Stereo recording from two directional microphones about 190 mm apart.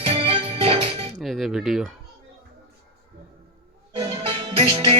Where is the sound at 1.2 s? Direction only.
Centre (ahead or behind).